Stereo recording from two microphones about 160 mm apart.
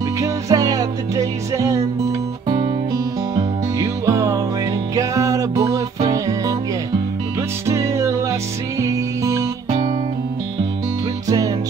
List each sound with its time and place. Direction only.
0.2 s music: 20° right (ahead or behind)
4.0 s music: 20° right (ahead or behind)
7.6 s music: 20° right (ahead or behind)
11.2 s music: 20° right (ahead or behind)